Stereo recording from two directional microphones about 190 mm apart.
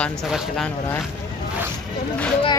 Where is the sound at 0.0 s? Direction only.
5° left (ahead or behind).